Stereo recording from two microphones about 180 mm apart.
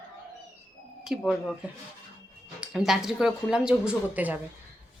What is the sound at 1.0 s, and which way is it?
A woman's voice, 5° right (ahead or behind).